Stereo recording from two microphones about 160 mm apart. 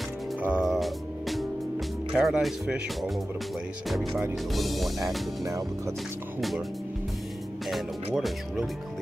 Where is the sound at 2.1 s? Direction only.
Centre (ahead or behind).